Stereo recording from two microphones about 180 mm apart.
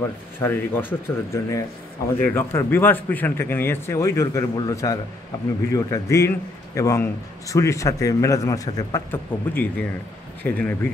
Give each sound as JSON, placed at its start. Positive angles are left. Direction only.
{"t": 0.4, "sound": "a man's voice", "side_deg": 10}